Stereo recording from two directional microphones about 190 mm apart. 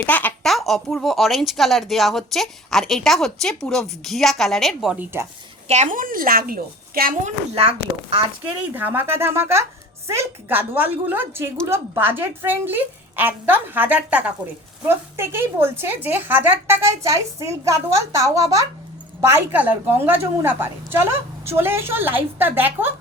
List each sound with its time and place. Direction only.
0.0 s speech: 10° left (ahead or behind)
5.6 s a woman's voice: 35° right (ahead or behind)
7.5 s a child's voice: 30° right (ahead or behind)
8.6 s a woman's voice: 10° right (ahead or behind)